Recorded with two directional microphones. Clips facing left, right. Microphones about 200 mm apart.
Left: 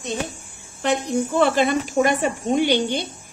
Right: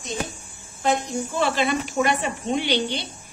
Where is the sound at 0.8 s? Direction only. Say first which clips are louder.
Left 3 dB; 65° left (ahead or behind).